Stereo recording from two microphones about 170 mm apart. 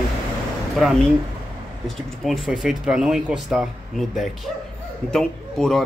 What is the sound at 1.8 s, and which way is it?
Speech, centre (ahead or behind).